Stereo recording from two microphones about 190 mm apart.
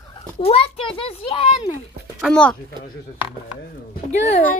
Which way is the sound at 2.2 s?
5° left (ahead or behind).